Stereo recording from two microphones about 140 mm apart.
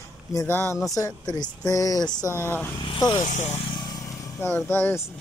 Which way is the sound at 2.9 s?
35° left (ahead or behind).